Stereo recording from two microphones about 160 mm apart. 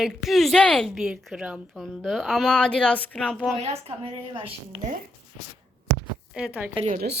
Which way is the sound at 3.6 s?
40° right (ahead or behind).